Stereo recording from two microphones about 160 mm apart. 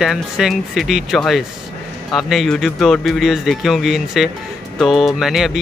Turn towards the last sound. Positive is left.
turn(degrees=0)  # may be behind; listen again after turning